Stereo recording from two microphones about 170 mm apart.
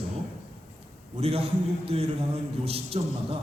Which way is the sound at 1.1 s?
35° right (ahead or behind).